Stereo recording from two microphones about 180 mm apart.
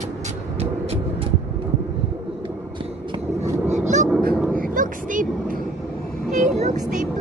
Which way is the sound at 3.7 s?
40° right (ahead or behind).